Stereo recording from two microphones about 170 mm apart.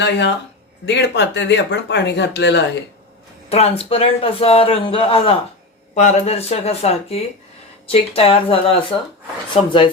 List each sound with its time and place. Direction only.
0.9 s speech: 90° left
3.5 s speech: 35° left (ahead or behind)